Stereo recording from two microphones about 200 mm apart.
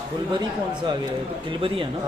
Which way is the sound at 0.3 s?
25° right (ahead or behind).